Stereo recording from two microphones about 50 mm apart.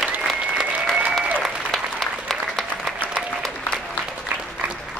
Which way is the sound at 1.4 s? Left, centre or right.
Centre.